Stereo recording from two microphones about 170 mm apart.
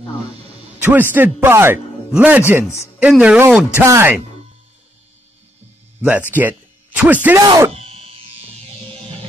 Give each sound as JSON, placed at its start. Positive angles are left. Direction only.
{"t": 0.8, "sound": "a man's voice", "side_deg": -10}
{"t": 6.3, "sound": "speech", "side_deg": -10}
{"t": 7.4, "sound": "speech", "side_deg": -20}
{"t": 7.7, "sound": "a sound", "side_deg": -35}